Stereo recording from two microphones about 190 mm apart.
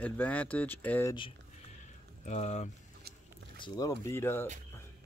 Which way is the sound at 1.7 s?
40° left (ahead or behind).